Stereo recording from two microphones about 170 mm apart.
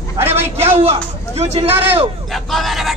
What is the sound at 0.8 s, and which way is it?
Speech, 35° right (ahead or behind).